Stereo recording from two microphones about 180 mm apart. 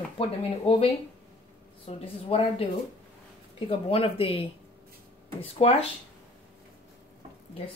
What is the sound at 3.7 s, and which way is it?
Speech, 30° left (ahead or behind).